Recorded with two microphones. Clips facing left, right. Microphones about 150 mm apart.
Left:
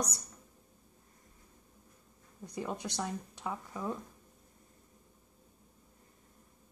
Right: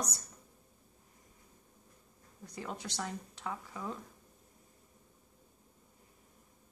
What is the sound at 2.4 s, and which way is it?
A woman's voice, 20° left (ahead or behind).